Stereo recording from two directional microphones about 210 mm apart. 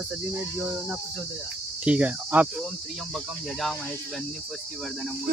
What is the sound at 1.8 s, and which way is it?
Cricket, 5° right (ahead or behind).